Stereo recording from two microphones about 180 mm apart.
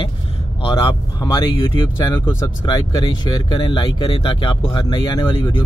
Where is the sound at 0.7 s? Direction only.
20° left (ahead or behind).